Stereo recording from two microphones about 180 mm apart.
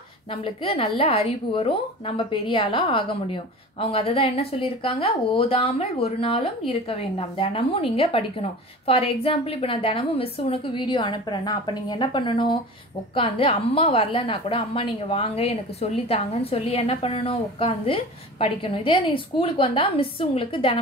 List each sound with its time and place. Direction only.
0.3 s a woman's voice: 30° left (ahead or behind)